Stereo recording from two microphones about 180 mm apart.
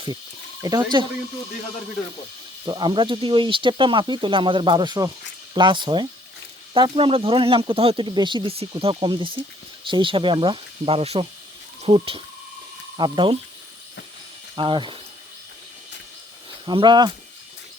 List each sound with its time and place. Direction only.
0.6 s speech: 20° right (ahead or behind)
2.6 s speech: 25° right (ahead or behind)
14.5 s speech: 25° right (ahead or behind)
16.6 s speech: 25° right (ahead or behind)